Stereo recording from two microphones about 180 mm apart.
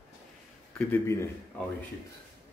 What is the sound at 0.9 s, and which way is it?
Speech, 15° left (ahead or behind).